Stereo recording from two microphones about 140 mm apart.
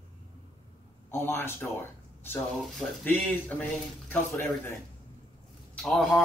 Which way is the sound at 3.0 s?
10° left (ahead or behind).